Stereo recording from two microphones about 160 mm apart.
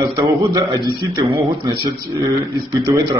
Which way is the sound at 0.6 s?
25° right (ahead or behind).